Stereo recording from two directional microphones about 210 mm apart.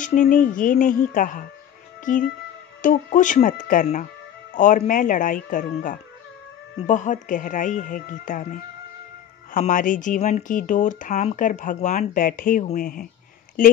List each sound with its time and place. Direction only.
0.0 s speech: 40° left (ahead or behind)
9.5 s speech: 40° left (ahead or behind)